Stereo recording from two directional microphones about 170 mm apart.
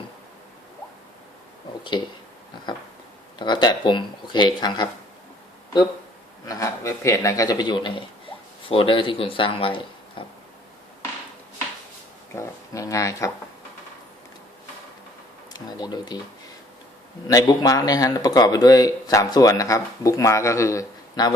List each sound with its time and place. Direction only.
1.9 s speech: 25° left (ahead or behind)
3.3 s speech: 25° left (ahead or behind)
6.5 s speech: 20° left (ahead or behind)
12.4 s speech: 20° left (ahead or behind)
15.5 s speech: 25° left (ahead or behind)
17.2 s speech: 20° left (ahead or behind)